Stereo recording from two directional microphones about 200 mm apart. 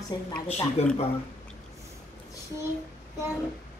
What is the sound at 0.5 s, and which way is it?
Speech, 30° left (ahead or behind).